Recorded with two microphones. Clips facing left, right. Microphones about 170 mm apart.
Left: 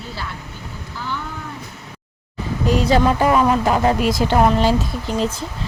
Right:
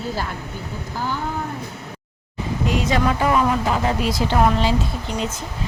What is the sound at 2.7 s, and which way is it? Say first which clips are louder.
Speech: left 5 dB; 35° left (ahead or behind).